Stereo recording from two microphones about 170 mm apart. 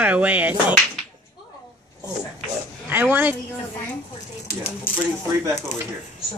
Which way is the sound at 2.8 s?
10° right (ahead or behind).